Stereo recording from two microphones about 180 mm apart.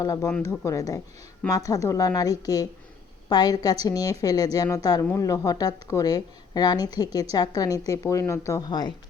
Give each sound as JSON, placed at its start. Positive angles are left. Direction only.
{"t": 0.0, "sound": "a woman's voice", "side_deg": 20}